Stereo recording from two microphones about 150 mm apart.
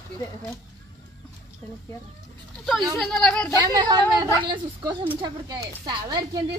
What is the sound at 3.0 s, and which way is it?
Speech, 5° left (ahead or behind).